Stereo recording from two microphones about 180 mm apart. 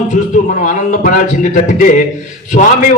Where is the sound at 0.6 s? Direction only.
45° left (ahead or behind).